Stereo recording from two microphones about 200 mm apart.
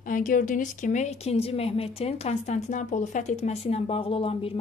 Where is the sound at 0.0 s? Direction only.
40° left (ahead or behind).